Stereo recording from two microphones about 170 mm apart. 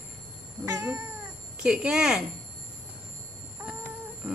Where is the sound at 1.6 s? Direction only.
5° right (ahead or behind).